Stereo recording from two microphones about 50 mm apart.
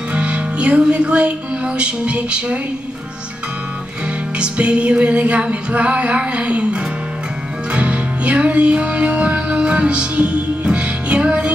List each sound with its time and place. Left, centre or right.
0.1 s music: right
4.4 s music: right